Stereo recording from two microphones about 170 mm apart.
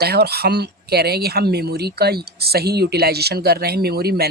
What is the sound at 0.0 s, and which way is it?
Speech, 70° right (ahead or behind).